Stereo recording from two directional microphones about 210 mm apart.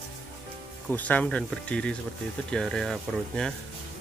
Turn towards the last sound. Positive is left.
turn(degrees=5)  # may be behind; listen again after turning